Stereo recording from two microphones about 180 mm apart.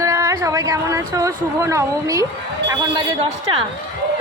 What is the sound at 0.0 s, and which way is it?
A woman's voice, 15° right (ahead or behind).